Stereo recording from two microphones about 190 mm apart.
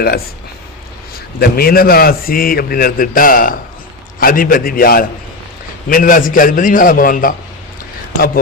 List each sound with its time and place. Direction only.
1.4 s a man's voice: 55° left (ahead or behind)